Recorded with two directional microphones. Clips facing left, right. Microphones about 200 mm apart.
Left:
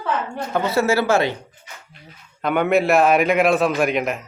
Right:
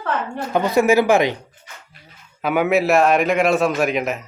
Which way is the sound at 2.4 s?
5° right (ahead or behind).